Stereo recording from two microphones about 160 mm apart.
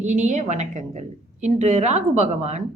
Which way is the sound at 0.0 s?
45° right (ahead or behind).